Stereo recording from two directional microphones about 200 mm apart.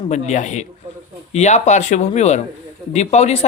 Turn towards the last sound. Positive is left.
turn(degrees=35)  # may be behind; listen again after turning